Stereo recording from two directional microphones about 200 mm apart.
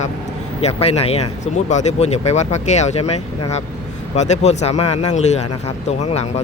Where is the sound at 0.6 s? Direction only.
30° left (ahead or behind).